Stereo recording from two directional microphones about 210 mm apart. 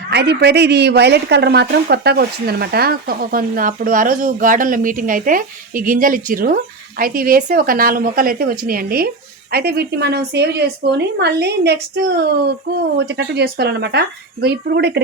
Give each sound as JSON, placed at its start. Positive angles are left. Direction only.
{"t": 0.1, "sound": "a woman's voice", "side_deg": -50}
{"t": 13.0, "sound": "a woman's voice", "side_deg": -50}